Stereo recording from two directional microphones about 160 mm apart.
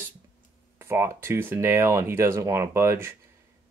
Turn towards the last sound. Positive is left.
turn(degrees=-15)  # may be behind; listen again after turning